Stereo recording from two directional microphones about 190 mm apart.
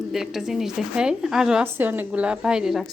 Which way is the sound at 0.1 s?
Centre (ahead or behind).